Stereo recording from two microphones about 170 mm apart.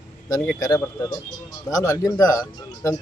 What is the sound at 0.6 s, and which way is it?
Speech, 20° left (ahead or behind).